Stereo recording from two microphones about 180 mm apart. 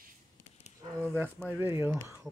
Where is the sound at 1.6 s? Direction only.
15° right (ahead or behind).